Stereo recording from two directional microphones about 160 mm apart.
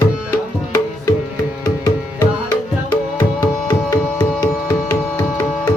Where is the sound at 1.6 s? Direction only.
25° left (ahead or behind).